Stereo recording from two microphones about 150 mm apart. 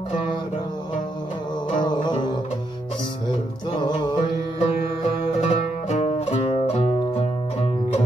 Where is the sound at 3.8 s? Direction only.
30° left (ahead or behind).